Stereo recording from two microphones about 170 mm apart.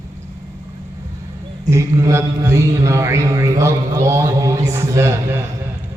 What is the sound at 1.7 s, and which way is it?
A man's voice, 15° right (ahead or behind).